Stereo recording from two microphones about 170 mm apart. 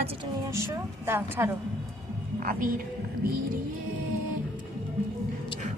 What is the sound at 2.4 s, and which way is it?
Speech, 55° right (ahead or behind).